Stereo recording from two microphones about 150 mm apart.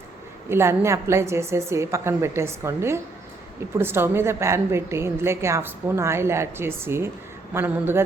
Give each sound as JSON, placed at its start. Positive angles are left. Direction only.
{"t": 0.4, "sound": "a woman's voice", "side_deg": -15}